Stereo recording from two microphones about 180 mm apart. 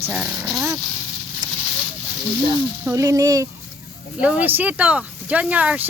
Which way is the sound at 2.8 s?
15° right (ahead or behind).